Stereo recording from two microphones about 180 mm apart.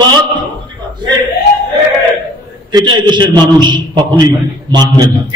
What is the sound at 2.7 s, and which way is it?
A man's voice, 25° right (ahead or behind).